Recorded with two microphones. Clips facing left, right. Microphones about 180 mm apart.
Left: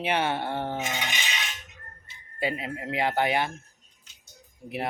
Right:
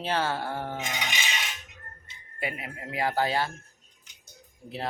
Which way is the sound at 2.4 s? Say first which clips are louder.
Left 5 dB; 25° left (ahead or behind).